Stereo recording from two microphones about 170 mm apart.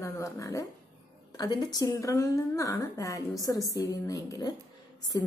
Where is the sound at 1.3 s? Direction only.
20° left (ahead or behind).